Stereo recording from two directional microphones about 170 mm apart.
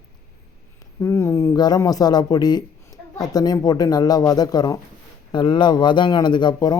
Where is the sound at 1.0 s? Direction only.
15° left (ahead or behind).